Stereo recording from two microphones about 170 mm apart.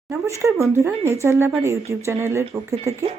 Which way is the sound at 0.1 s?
15° right (ahead or behind).